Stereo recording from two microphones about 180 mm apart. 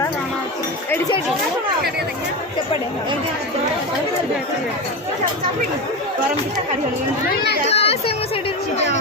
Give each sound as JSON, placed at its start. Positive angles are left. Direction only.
{"t": 7.4, "sound": "a child's voice", "side_deg": 60}
{"t": 7.7, "sound": "speech", "side_deg": 35}